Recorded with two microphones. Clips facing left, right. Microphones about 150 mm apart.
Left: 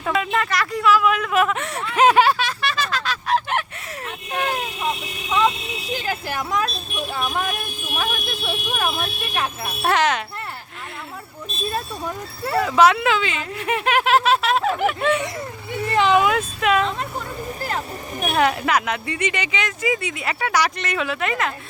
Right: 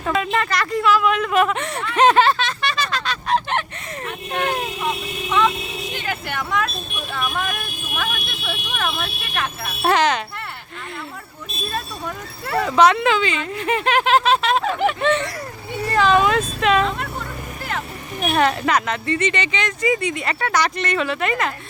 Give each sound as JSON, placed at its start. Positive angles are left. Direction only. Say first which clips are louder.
{"t": 0.0, "sound": "a sound", "louder": "right 1 dB", "side_deg": 5}
{"t": 6.1, "sound": "speech", "louder": "even", "side_deg": 35}
{"t": 7.1, "sound": "vehicle", "louder": "even", "side_deg": 30}
{"t": 9.8, "sound": "speech", "louder": "right 2 dB", "side_deg": 0}
{"t": 11.7, "sound": "speech", "louder": "even", "side_deg": 20}
{"t": 12.5, "sound": "speech", "louder": "right 1 dB", "side_deg": 5}
{"t": 15.9, "sound": "speech", "louder": "right 1 dB", "side_deg": 20}
{"t": 18.2, "sound": "speech", "louder": "right 1 dB", "side_deg": 5}